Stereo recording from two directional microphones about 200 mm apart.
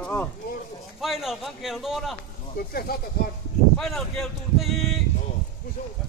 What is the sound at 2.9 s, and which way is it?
Speech, 50° left (ahead or behind).